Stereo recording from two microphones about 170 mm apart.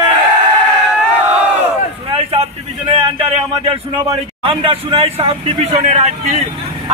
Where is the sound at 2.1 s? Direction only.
35° right (ahead or behind).